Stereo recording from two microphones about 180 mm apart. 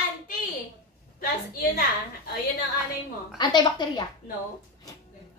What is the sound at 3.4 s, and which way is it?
Speech, 25° left (ahead or behind).